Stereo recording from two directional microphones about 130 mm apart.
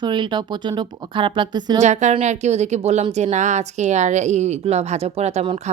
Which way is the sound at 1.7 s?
65° right (ahead or behind).